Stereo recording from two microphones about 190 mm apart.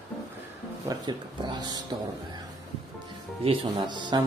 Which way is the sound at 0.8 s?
20° right (ahead or behind).